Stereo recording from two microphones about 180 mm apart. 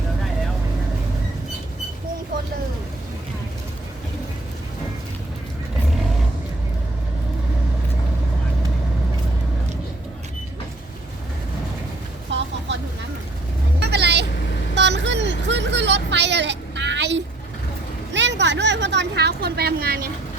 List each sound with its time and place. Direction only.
12.3 s vehicle: 85° right
13.7 s vehicle: 70° right (ahead or behind)
18.1 s a sound: 80° right; by 20.1 s 60° right (ahead or behind)